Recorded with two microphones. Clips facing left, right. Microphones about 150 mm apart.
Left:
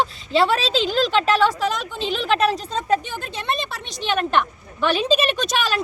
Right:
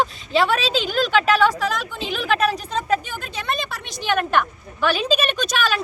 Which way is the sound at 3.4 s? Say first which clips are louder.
Even; 30° left (ahead or behind).